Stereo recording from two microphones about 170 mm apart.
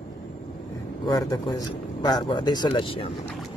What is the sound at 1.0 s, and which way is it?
A man's voice, 25° left (ahead or behind).